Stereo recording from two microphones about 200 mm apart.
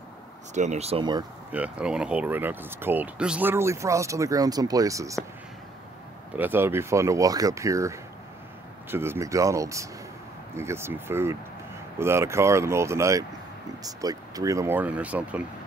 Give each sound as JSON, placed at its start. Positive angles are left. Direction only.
{"t": 0.6, "sound": "speech", "side_deg": -35}
{"t": 1.5, "sound": "speech", "side_deg": -5}
{"t": 6.3, "sound": "speech", "side_deg": -10}